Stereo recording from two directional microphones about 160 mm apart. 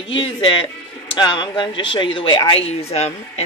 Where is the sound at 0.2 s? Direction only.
35° left (ahead or behind).